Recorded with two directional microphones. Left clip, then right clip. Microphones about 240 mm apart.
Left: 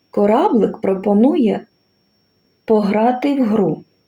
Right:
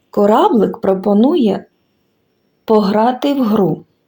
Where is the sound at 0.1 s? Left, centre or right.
Right.